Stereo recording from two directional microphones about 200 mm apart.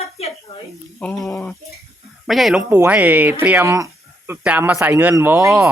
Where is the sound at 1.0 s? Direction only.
5° left (ahead or behind).